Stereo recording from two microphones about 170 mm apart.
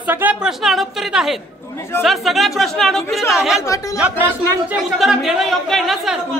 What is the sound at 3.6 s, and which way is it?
Speech, 20° left (ahead or behind).